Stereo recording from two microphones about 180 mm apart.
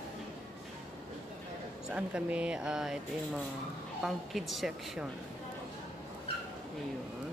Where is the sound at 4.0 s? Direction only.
Centre (ahead or behind).